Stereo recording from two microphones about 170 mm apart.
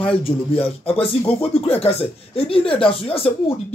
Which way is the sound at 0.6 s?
35° left (ahead or behind).